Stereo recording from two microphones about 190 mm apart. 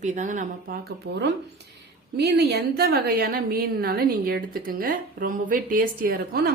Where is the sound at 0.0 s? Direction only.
40° right (ahead or behind).